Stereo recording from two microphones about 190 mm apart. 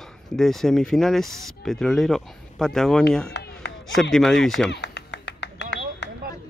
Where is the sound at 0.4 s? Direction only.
Centre (ahead or behind).